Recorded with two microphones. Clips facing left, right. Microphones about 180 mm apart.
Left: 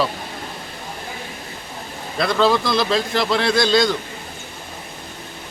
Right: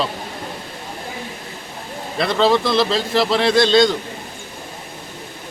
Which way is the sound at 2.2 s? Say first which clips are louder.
Right 1 dB; 25° right (ahead or behind).